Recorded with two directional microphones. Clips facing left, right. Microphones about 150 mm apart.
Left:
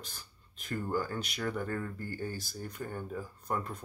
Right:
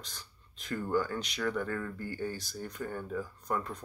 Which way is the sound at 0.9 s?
35° left (ahead or behind).